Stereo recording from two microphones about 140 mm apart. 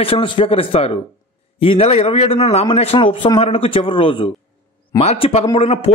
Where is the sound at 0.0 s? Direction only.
40° left (ahead or behind).